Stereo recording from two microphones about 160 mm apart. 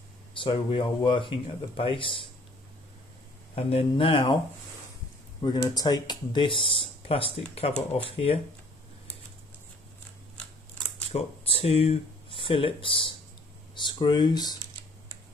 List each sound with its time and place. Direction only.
0.3 s speech: 30° left (ahead or behind)
3.5 s speech: 35° left (ahead or behind)
5.4 s speech: 25° left (ahead or behind)
11.1 s speech: 40° left (ahead or behind)